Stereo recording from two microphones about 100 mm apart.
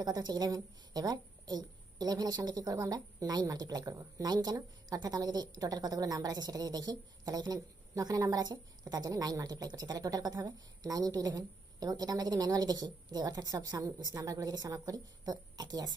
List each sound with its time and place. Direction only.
0.0 s a woman's voice: 45° right (ahead or behind)